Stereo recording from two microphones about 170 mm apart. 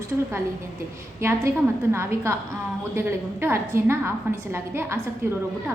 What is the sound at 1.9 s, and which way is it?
A woman's voice, 15° right (ahead or behind).